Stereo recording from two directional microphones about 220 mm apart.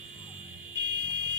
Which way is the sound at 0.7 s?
50° right (ahead or behind).